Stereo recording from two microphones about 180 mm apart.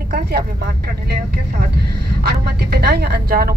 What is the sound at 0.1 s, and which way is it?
Speech, 60° right (ahead or behind).